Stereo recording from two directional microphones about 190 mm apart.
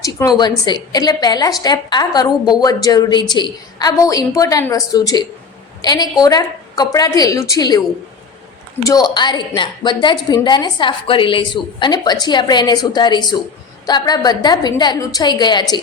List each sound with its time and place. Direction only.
0.0 s a woman's voice: 20° left (ahead or behind)
8.8 s a woman's voice: 20° left (ahead or behind)